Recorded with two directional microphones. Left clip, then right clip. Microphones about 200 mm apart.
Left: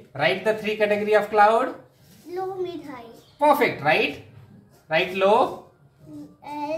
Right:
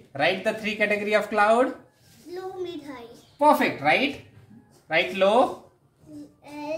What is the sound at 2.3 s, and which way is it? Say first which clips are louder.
Speech: left 5 dB; 5° right (ahead or behind).